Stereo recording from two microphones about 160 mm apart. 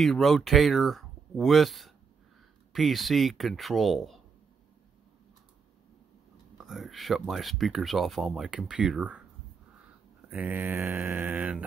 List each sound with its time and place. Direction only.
0.0 s speech: centre (ahead or behind)
6.6 s speech: centre (ahead or behind)
10.3 s mantra: 10° right (ahead or behind)